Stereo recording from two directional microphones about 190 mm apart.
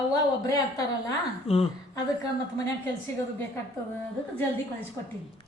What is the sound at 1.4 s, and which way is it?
Speech, 30° left (ahead or behind).